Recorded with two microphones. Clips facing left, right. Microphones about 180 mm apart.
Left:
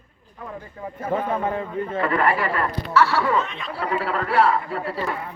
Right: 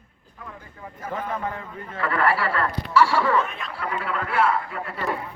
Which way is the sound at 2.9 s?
10° right (ahead or behind).